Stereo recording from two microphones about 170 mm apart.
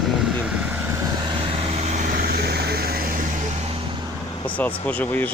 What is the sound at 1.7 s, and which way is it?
Vehicle, 40° right (ahead or behind).